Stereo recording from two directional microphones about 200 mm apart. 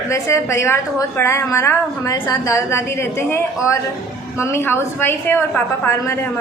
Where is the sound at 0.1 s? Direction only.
15° left (ahead or behind).